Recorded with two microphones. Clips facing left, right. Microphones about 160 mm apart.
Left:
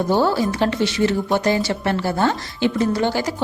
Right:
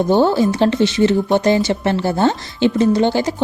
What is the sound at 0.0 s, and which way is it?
Speech, 20° right (ahead or behind).